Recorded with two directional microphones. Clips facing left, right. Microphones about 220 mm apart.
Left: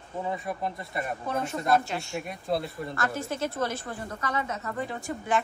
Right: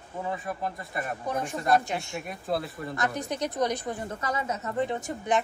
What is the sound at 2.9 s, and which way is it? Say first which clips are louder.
A woman's voice: right 2 dB; 20° right (ahead or behind).